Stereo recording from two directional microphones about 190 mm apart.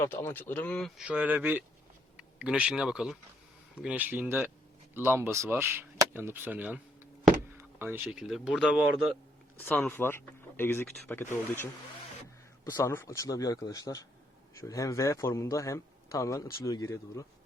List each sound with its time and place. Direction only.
0.0 s speech: 15° left (ahead or behind)
9.6 s a man's voice: 10° left (ahead or behind)
12.7 s a man's voice: 15° left (ahead or behind)